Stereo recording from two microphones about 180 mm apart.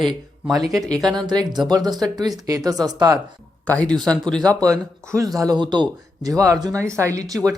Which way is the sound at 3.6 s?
5° left (ahead or behind).